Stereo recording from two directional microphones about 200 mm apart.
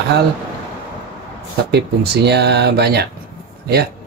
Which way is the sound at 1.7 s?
55° right (ahead or behind).